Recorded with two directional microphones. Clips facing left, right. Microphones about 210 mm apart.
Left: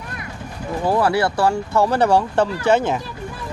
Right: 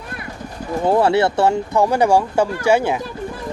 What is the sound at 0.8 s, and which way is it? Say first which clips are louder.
Speech: right 3 dB; 25° right (ahead or behind).